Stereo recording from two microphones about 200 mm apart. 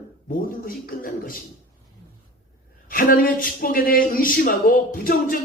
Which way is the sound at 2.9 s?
45° left (ahead or behind).